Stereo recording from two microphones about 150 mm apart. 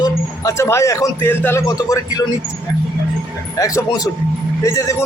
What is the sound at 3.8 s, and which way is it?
Speech, 25° left (ahead or behind).